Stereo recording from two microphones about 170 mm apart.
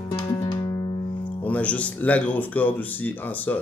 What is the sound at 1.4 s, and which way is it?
Speech, 10° left (ahead or behind).